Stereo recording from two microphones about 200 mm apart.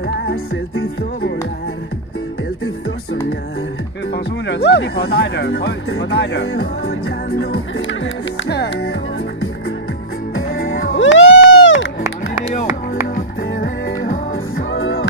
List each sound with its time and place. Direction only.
0.0 s music: 60° left (ahead or behind)
4.1 s speech: 55° left (ahead or behind)
10.7 s music: 75° left (ahead or behind)
14.3 s music: 80° left